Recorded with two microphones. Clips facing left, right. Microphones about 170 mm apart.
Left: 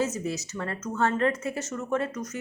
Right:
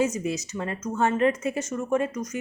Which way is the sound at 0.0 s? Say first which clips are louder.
Right 3 dB; 15° right (ahead or behind).